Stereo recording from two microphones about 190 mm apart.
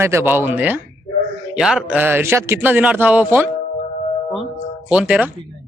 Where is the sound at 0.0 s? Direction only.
15° right (ahead or behind).